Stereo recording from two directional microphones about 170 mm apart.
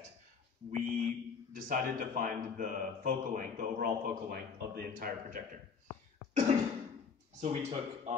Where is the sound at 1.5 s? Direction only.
55° right (ahead or behind).